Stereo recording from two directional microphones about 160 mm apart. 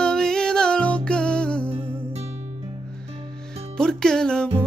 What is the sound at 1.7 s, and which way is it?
Music, 35° right (ahead or behind).